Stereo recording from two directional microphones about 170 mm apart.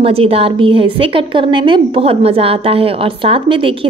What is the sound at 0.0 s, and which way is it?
A woman's voice, 35° right (ahead or behind).